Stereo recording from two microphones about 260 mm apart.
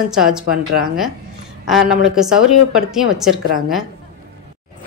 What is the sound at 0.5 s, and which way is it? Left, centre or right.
Speech, right.